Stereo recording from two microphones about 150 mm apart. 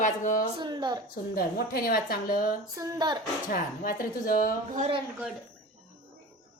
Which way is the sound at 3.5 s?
70° left (ahead or behind).